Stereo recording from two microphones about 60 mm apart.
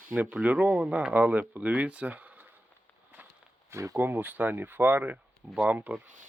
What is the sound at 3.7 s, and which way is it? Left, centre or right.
Speech, right.